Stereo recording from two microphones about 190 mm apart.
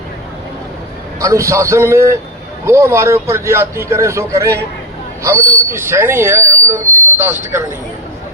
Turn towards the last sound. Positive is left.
turn(degrees=-15)  # may be behind; listen again after turning